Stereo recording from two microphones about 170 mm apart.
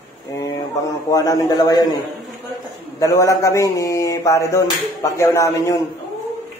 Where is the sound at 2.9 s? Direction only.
20° left (ahead or behind).